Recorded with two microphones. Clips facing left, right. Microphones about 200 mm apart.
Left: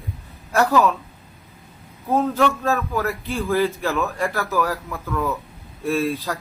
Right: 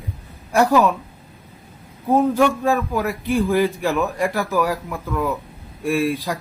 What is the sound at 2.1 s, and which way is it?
A man's voice, 15° right (ahead or behind).